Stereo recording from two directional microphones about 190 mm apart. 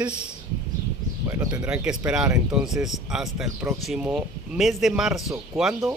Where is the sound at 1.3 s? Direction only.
15° right (ahead or behind).